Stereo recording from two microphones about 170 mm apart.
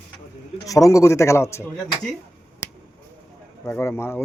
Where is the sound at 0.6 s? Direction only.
20° left (ahead or behind).